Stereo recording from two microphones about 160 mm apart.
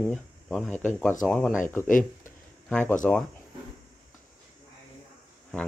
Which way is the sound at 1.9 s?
55° left (ahead or behind).